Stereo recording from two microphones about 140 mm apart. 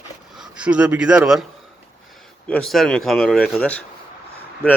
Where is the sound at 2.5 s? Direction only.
Centre (ahead or behind).